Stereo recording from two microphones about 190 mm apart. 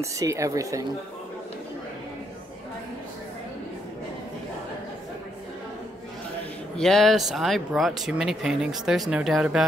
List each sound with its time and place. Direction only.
0.0 s a woman's voice: 15° right (ahead or behind)
6.8 s speech: centre (ahead or behind)